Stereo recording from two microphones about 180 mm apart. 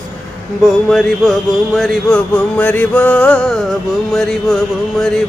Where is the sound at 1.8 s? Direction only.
5° left (ahead or behind).